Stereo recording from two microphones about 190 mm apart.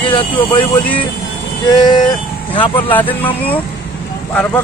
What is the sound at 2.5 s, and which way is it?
Speech, 25° left (ahead or behind).